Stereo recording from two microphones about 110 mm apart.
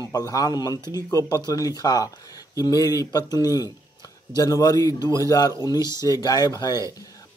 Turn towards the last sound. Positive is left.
turn(degrees=35)  # may be behind; listen again after turning